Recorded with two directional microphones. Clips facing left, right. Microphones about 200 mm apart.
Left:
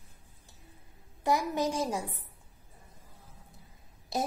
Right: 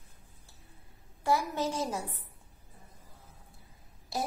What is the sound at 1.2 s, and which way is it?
A woman's voice, 15° left (ahead or behind).